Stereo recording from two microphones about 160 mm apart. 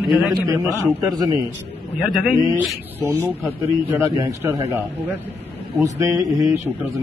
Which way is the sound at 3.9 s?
15° right (ahead or behind).